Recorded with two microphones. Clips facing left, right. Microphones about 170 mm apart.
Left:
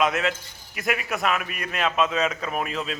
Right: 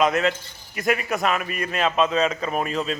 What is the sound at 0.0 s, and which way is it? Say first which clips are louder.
A man's voice: right 3 dB; centre (ahead or behind).